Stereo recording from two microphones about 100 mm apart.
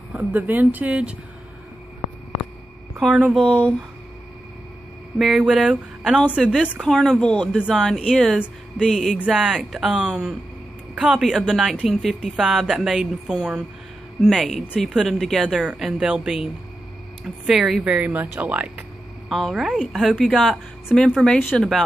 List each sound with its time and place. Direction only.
0.1 s speech: 15° right (ahead or behind)
3.0 s a woman's voice: 5° left (ahead or behind)
5.2 s a woman's voice: 5° right (ahead or behind)
17.5 s speech: 5° right (ahead or behind)
19.2 s a woman's voice: centre (ahead or behind)